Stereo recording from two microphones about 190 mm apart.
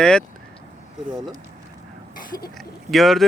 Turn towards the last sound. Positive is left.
turn(degrees=0)  # may be behind; listen again after turning